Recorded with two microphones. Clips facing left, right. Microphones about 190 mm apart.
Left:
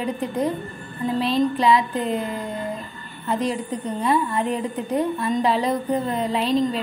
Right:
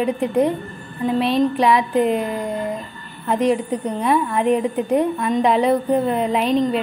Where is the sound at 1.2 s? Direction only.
75° right (ahead or behind).